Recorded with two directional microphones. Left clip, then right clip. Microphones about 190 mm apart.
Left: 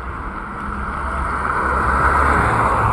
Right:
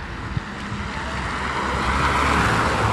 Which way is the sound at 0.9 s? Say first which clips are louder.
Left 4 dB; 40° right (ahead or behind).